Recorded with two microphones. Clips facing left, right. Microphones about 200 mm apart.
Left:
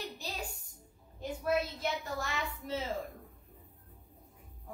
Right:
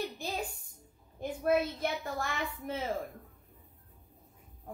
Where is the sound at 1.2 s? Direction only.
55° right (ahead or behind).